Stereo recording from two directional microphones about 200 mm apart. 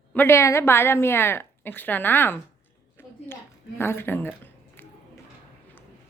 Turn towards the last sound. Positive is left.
turn(degrees=10)  # may be behind; listen again after turning